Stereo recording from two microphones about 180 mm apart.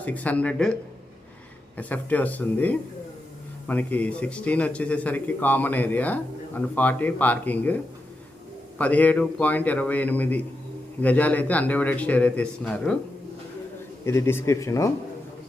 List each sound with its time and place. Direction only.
0.0 s speech: 10° left (ahead or behind)
1.7 s speech: 10° left (ahead or behind)
8.8 s speech: 10° left (ahead or behind)
14.0 s speech: 15° left (ahead or behind)